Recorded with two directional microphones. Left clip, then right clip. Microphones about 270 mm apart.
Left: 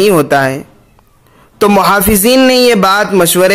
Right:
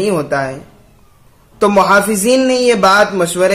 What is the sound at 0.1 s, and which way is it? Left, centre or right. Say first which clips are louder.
Speech: left 7 dB; left.